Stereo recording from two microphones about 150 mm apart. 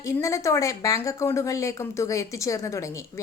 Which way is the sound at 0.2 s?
20° left (ahead or behind).